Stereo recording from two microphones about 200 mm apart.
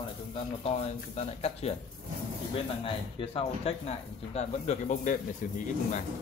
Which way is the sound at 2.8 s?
30° left (ahead or behind).